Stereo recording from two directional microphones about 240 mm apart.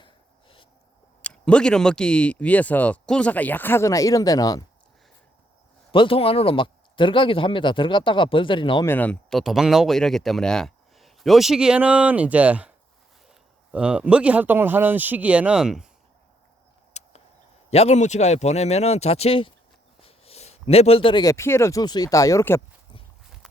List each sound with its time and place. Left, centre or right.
0.0 s a sound: left
1.2 s speech: centre
5.9 s speech: left
8.9 s speech: centre
16.9 s a sound: left
17.7 s speech: left; by 23.0 s centre